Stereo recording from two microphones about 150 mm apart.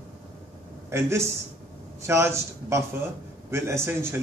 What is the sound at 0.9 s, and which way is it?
A man's voice, 15° right (ahead or behind).